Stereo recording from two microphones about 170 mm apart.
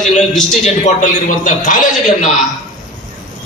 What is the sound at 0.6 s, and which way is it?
A man's voice, 45° left (ahead or behind).